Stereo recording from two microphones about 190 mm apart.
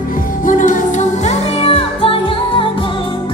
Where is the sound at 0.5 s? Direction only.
40° left (ahead or behind).